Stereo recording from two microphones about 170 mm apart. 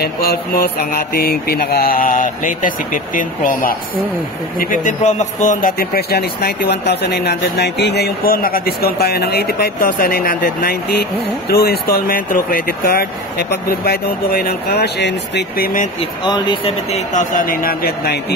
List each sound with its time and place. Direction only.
0.0 s speech: 60° left (ahead or behind)
16.0 s speech: 25° left (ahead or behind)
16.9 s speech: 45° left (ahead or behind); by 18.2 s 65° left (ahead or behind)